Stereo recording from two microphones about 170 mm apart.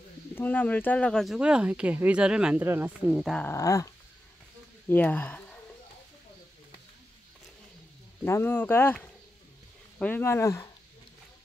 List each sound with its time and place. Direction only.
0.3 s speech: 10° left (ahead or behind); by 3.0 s 10° right (ahead or behind)
3.1 s speech: 5° left (ahead or behind)
3.4 s speech: 20° left (ahead or behind)
8.2 s speech: 15° left (ahead or behind)